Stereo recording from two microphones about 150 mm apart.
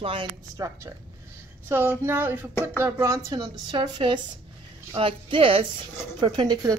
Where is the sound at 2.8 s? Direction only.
20° right (ahead or behind).